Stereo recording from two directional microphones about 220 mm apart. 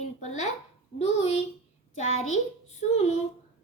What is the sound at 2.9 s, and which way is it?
Speech, 30° left (ahead or behind).